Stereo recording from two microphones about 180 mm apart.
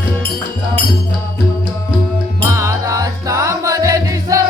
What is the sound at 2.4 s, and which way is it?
Music, 15° right (ahead or behind).